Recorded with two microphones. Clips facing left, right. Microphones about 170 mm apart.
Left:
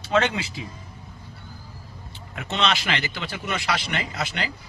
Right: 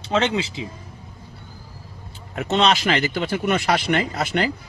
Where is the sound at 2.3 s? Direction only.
45° right (ahead or behind).